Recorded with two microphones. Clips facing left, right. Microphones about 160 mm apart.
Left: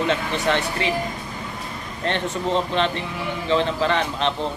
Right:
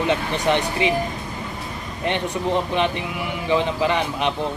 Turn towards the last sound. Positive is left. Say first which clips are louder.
# even
turn(degrees=-15)  # may be behind; listen again after turning